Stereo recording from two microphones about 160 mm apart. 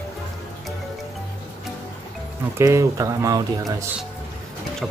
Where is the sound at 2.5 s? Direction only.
20° right (ahead or behind).